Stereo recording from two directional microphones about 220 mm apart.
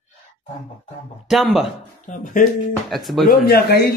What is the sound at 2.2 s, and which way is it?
Speech, 35° left (ahead or behind).